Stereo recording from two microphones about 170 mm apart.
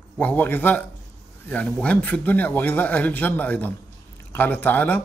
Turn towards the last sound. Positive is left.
turn(degrees=10)  # may be behind; listen again after turning